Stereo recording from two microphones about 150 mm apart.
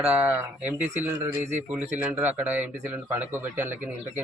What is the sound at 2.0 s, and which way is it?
A man's voice, 10° right (ahead or behind).